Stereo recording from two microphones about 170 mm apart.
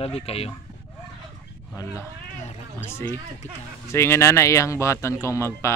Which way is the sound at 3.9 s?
15° left (ahead or behind).